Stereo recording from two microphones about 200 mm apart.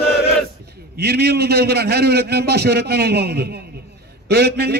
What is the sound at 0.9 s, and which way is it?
A man's voice, 55° right (ahead or behind).